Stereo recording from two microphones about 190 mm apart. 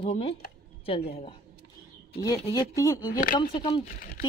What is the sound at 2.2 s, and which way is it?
Speech, 20° left (ahead or behind).